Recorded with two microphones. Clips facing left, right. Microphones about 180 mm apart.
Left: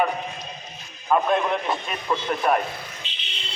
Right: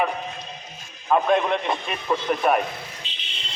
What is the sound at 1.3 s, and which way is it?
Speech, 5° left (ahead or behind).